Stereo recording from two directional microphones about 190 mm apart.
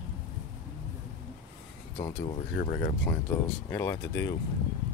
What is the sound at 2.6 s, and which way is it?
Speech, 40° left (ahead or behind).